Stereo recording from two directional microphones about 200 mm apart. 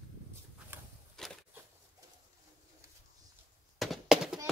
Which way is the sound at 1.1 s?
Centre (ahead or behind).